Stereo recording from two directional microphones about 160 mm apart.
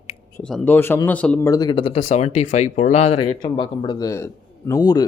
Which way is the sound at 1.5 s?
25° left (ahead or behind).